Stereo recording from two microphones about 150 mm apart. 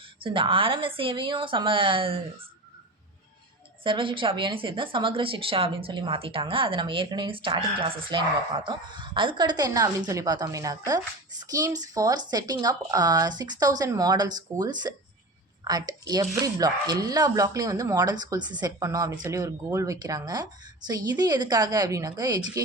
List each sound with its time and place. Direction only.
0.2 s a woman's voice: 35° right (ahead or behind)
3.8 s a woman's voice: 35° right (ahead or behind)